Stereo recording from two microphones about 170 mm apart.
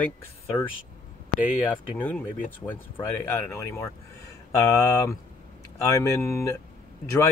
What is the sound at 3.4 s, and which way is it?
Speech, 15° left (ahead or behind).